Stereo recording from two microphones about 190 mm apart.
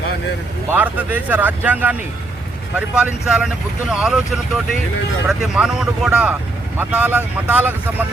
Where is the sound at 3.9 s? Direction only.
5° right (ahead or behind).